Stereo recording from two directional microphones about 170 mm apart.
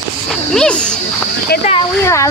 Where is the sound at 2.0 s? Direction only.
15° left (ahead or behind).